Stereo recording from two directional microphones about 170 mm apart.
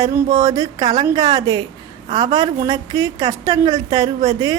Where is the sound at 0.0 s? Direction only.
20° right (ahead or behind).